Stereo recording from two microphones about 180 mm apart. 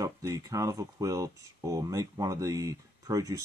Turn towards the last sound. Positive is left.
turn(degrees=-20)  # may be behind; listen again after turning